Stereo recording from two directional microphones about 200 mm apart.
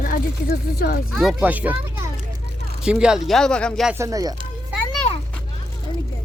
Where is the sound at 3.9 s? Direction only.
15° right (ahead or behind).